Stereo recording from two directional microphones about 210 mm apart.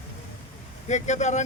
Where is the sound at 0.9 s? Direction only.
35° left (ahead or behind).